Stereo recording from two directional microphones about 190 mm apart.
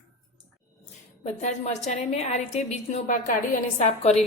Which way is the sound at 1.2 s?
35° left (ahead or behind).